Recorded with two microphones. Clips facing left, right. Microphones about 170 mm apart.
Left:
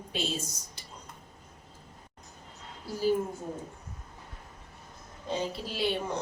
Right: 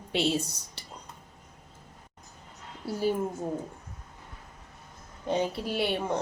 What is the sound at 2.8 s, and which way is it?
Speech, 60° right (ahead or behind).